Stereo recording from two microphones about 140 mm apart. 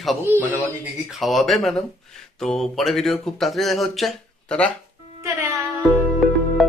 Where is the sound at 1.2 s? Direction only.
Centre (ahead or behind).